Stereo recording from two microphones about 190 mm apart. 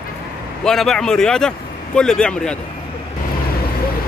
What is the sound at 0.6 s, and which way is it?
Speech, centre (ahead or behind).